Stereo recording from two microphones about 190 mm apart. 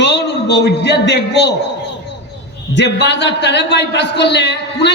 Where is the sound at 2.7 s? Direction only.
65° left (ahead or behind).